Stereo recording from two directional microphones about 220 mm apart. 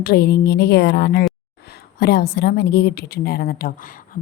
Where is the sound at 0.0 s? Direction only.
45° left (ahead or behind).